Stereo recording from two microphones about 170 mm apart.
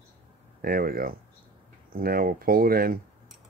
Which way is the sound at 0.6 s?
60° right (ahead or behind).